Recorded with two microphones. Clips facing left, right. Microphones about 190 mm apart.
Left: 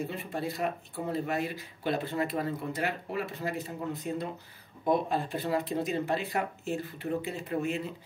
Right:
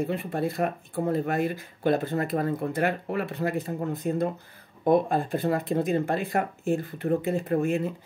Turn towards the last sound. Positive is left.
turn(degrees=-50)  # may be behind; listen again after turning